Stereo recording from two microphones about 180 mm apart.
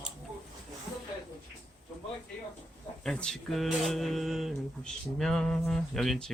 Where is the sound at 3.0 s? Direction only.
5° left (ahead or behind).